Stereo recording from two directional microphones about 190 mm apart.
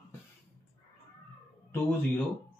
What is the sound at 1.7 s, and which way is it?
Speech, 10° left (ahead or behind).